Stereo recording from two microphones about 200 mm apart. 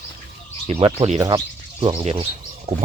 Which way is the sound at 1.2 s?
20° right (ahead or behind).